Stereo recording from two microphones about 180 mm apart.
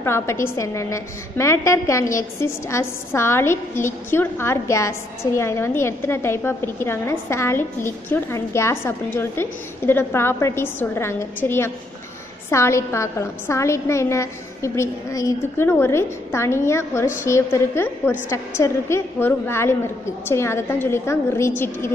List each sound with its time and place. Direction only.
0.0 s a woman's voice: 15° left (ahead or behind)